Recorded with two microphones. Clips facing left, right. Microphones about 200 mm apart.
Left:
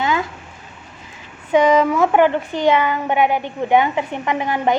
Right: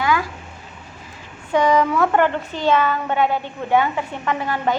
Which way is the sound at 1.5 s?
20° left (ahead or behind).